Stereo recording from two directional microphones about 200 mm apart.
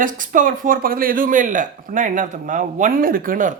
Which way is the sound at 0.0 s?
40° right (ahead or behind).